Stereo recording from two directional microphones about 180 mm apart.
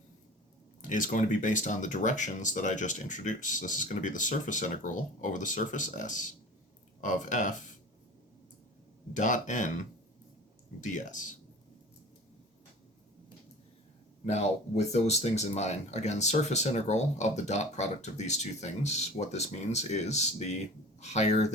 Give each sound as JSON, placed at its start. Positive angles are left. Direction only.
{"t": 0.8, "sound": "speech", "side_deg": 45}
{"t": 9.1, "sound": "speech", "side_deg": 45}
{"t": 10.8, "sound": "speech", "side_deg": 45}
{"t": 14.3, "sound": "speech", "side_deg": 40}